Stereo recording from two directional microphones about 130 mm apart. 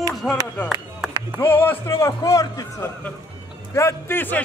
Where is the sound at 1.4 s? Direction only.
15° left (ahead or behind).